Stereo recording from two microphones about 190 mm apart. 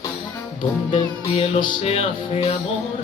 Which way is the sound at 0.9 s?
30° left (ahead or behind).